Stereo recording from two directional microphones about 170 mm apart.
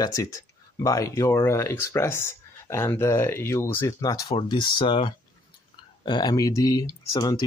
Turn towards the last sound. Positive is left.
turn(degrees=20)  # may be behind; listen again after turning